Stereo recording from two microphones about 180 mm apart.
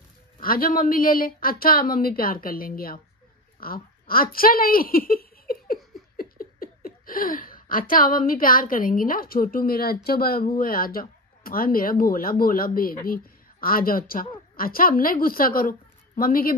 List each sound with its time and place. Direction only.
0.4 s a woman's voice: 55° left (ahead or behind)